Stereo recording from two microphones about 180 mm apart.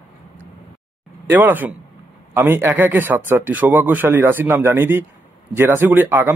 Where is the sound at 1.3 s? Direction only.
10° right (ahead or behind).